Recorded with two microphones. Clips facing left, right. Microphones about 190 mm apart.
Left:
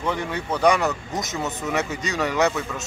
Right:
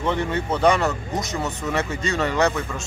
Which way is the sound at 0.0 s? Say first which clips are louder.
Right 3 dB; 5° left (ahead or behind).